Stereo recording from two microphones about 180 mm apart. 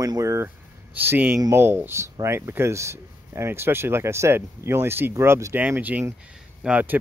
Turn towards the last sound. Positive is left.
turn(degrees=-5)  # may be behind; listen again after turning